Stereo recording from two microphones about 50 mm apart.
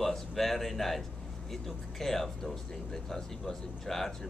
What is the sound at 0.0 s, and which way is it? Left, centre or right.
Speech, centre.